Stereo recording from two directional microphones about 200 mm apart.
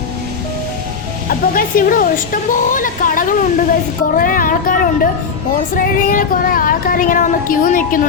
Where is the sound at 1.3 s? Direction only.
45° left (ahead or behind).